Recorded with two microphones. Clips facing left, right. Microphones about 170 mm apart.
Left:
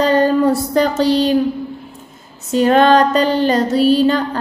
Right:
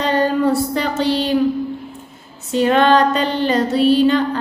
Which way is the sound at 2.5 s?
40° left (ahead or behind).